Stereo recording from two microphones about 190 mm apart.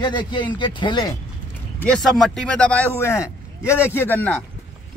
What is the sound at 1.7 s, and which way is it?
Speech, 5° left (ahead or behind).